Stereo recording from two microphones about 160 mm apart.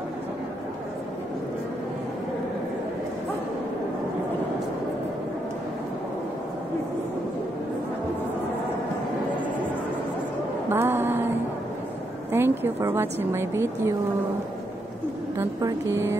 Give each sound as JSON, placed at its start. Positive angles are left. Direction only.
{"t": 10.7, "sound": "a sound", "side_deg": -15}
{"t": 12.3, "sound": "a woman's voice", "side_deg": -15}
{"t": 15.3, "sound": "a woman's voice", "side_deg": -15}